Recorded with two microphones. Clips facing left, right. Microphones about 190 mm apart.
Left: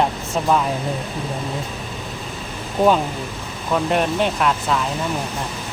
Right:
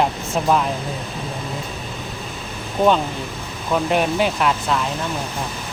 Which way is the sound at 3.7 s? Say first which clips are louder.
Even; centre (ahead or behind).